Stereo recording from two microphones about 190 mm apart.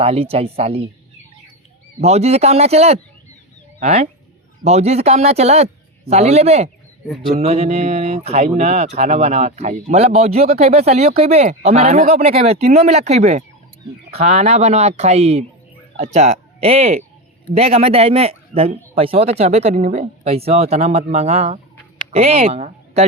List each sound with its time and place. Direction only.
0.0 s speech: 30° right (ahead or behind)
2.0 s speech: 35° right (ahead or behind)